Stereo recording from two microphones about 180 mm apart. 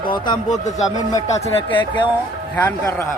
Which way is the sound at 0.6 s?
40° left (ahead or behind).